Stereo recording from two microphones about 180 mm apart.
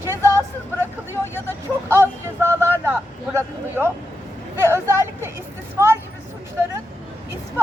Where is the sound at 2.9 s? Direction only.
15° right (ahead or behind).